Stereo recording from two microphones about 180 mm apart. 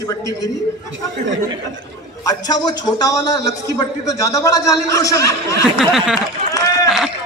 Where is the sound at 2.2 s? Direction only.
20° left (ahead or behind).